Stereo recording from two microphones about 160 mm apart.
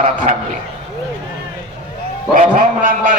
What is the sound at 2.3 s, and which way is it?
Speech, 60° right (ahead or behind).